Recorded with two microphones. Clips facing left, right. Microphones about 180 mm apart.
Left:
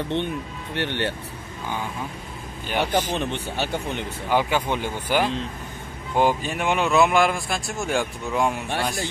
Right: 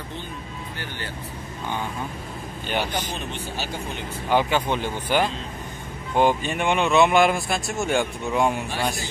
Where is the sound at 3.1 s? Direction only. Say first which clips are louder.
Left 5 dB; 60° left (ahead or behind).